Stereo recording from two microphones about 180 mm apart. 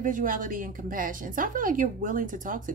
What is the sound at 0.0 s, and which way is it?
Speech, 50° right (ahead or behind).